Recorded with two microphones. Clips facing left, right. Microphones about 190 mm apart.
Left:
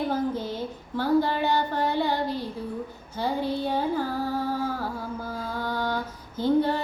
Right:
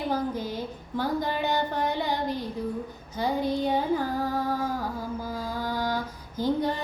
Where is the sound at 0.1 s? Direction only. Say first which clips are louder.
Left 1 dB; 10° right (ahead or behind).